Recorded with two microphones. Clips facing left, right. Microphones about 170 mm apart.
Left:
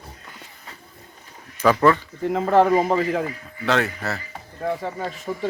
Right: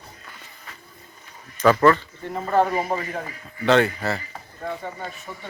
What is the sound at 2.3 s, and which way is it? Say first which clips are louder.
Speech: left 4 dB; 90° left.